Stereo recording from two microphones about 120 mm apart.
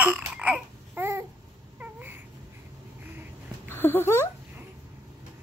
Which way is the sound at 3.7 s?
20° left (ahead or behind).